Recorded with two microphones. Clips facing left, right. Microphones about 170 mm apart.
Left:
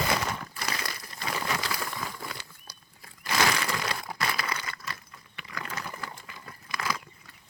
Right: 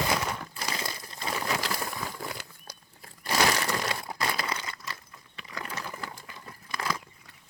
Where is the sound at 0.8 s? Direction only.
25° right (ahead or behind).